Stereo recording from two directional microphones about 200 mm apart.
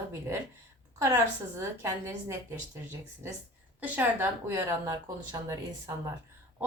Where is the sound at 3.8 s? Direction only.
10° right (ahead or behind).